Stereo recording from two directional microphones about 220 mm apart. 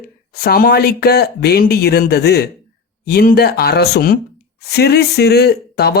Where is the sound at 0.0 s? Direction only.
45° left (ahead or behind).